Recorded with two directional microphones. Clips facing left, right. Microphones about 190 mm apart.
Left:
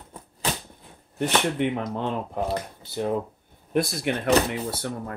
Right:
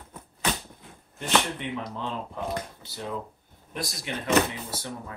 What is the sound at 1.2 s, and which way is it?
Speech, 55° left (ahead or behind).